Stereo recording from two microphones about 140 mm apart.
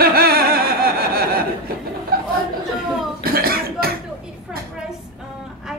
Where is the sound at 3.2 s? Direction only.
90° right.